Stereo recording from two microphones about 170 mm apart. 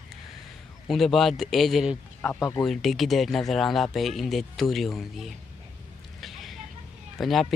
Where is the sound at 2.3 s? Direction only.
15° left (ahead or behind).